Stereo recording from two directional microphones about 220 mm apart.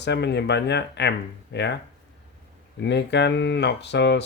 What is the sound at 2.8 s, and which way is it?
Speech, 50° left (ahead or behind).